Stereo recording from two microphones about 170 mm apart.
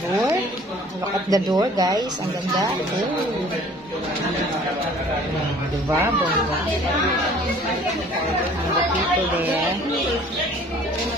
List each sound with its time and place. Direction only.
1.3 s speech: 20° right (ahead or behind)